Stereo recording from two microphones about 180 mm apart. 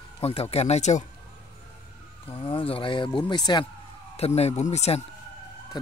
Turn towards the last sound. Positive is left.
turn(degrees=35)  # may be behind; listen again after turning